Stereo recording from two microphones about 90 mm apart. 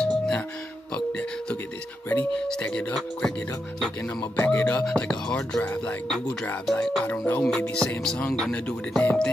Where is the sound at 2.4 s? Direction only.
10° left (ahead or behind).